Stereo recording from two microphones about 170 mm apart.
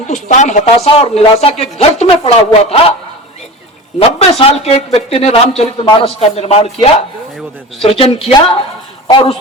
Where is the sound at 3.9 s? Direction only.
35° left (ahead or behind).